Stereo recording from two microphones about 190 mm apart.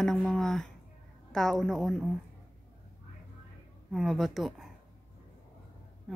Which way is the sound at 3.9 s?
Centre (ahead or behind).